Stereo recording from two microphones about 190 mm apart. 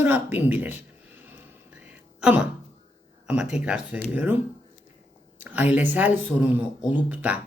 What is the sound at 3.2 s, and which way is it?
Speech, 5° right (ahead or behind).